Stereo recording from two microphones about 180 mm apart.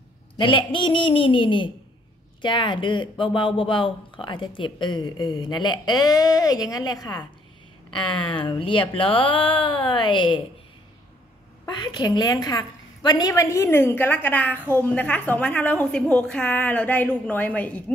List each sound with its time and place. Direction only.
0.4 s speech: 25° left (ahead or behind)
11.6 s a woman's voice: 25° left (ahead or behind); by 17.9 s 10° left (ahead or behind)